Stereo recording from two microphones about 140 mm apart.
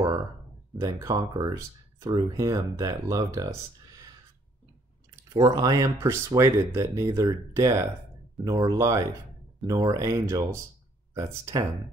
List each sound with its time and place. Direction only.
0.7 s speech: 25° right (ahead or behind)
5.3 s speech: 30° right (ahead or behind)
11.1 s speech: 30° right (ahead or behind)